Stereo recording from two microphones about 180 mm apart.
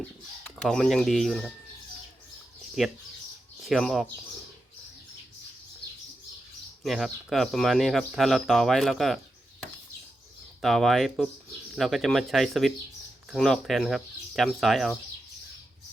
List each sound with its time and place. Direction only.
0.4 s speech: 5° left (ahead or behind)
2.8 s speech: centre (ahead or behind)
6.8 s speech: centre (ahead or behind)
10.6 s speech: centre (ahead or behind)